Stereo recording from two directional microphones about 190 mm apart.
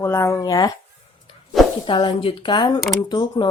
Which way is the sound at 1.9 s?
25° left (ahead or behind).